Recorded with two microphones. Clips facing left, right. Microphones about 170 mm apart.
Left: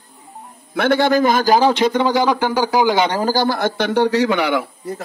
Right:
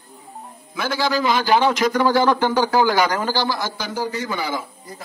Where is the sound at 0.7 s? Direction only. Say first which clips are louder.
Left 7 dB; 65° left (ahead or behind).